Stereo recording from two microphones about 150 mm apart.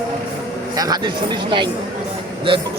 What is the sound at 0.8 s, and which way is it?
Speech, 30° right (ahead or behind).